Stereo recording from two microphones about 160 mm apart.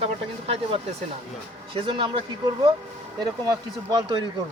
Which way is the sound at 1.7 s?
35° right (ahead or behind).